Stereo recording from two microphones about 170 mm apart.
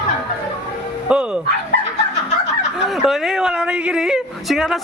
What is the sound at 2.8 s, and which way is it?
A woman's voice, centre (ahead or behind).